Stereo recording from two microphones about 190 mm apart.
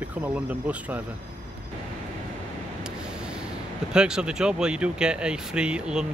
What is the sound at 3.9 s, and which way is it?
Speech, 5° right (ahead or behind).